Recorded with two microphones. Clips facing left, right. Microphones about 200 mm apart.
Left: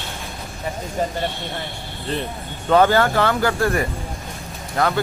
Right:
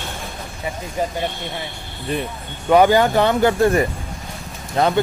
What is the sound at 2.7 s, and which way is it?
Speech, 15° right (ahead or behind).